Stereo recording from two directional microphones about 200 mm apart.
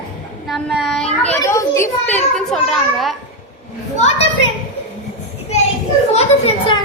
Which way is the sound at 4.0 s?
30° left (ahead or behind).